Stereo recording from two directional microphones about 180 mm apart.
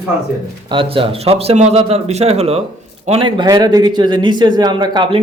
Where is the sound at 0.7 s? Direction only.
30° right (ahead or behind).